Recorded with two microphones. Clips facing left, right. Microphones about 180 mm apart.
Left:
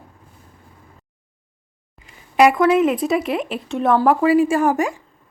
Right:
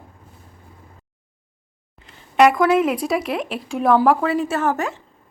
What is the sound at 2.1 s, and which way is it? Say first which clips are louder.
Speech: even; 5° left (ahead or behind).